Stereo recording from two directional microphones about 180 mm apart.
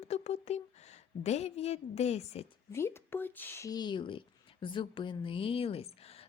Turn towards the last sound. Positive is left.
turn(degrees=35)  # may be behind; listen again after turning